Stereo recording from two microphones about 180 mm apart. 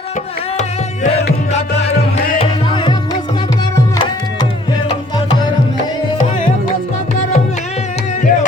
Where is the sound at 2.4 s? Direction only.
25° left (ahead or behind).